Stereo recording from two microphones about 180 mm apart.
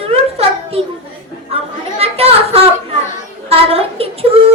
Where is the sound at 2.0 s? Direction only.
35° right (ahead or behind).